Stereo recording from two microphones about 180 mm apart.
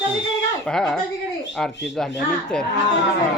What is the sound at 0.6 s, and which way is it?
A child's voice, 5° left (ahead or behind).